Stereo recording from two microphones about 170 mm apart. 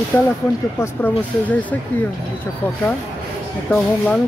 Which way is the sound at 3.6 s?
5° left (ahead or behind).